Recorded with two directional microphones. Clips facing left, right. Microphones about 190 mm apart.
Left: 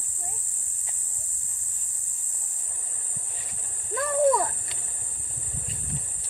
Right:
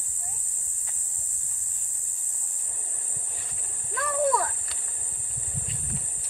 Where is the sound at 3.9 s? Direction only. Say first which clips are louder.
Left 4 dB; 20° left (ahead or behind).